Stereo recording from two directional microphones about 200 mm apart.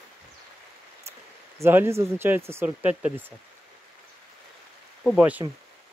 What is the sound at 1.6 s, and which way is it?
Speech, 10° right (ahead or behind).